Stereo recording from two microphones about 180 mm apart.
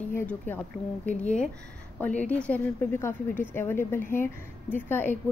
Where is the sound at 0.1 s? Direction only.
10° left (ahead or behind).